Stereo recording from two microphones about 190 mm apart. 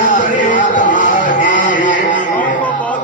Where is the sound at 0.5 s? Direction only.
45° left (ahead or behind).